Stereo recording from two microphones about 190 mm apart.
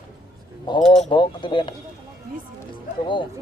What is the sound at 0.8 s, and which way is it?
Speech, centre (ahead or behind).